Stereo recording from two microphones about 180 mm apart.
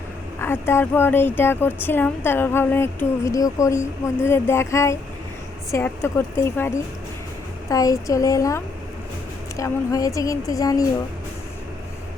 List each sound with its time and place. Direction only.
0.4 s speech: 15° left (ahead or behind)